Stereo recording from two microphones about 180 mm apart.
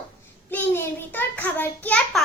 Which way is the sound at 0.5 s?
10° left (ahead or behind).